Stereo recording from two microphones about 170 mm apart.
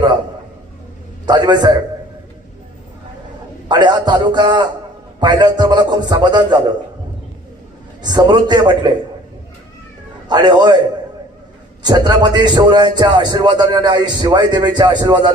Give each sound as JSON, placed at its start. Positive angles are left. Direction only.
{"t": 1.3, "sound": "a man's voice", "side_deg": -25}
{"t": 3.7, "sound": "a man's voice", "side_deg": -25}
{"t": 8.0, "sound": "a man's voice", "side_deg": -25}
{"t": 10.2, "sound": "a man's voice", "side_deg": -25}
{"t": 11.8, "sound": "a man's voice", "side_deg": -25}